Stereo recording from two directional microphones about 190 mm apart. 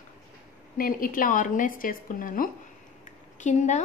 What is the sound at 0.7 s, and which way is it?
A woman's voice, 50° left (ahead or behind).